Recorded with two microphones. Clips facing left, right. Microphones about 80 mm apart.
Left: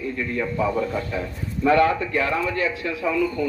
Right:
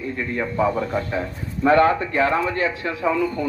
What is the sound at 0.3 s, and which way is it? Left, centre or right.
A man's voice, right.